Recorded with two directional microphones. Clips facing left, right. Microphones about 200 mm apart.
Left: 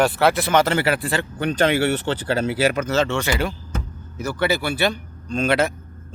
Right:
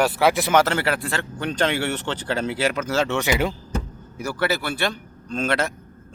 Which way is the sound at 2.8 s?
10° right (ahead or behind).